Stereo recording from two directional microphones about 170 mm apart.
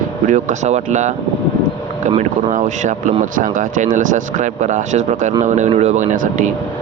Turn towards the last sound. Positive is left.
turn(degrees=-50)  # may be behind; listen again after turning